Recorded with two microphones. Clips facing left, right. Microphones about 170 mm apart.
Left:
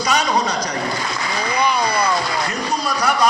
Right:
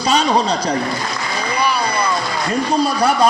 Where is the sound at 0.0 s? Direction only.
30° right (ahead or behind).